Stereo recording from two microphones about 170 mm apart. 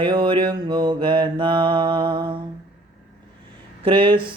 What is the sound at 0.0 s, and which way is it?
Mantra, 30° right (ahead or behind).